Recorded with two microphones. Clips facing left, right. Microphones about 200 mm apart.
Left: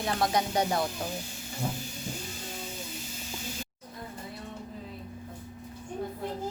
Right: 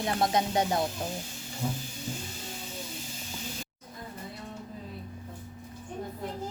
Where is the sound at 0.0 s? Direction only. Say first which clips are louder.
Right 1 dB; 25° right (ahead or behind).